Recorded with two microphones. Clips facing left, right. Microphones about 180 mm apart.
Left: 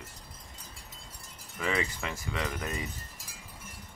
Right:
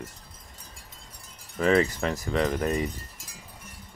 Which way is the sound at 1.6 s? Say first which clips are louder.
Right 10 dB; 40° right (ahead or behind).